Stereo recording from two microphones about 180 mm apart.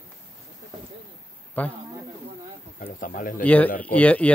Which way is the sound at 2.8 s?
50° left (ahead or behind).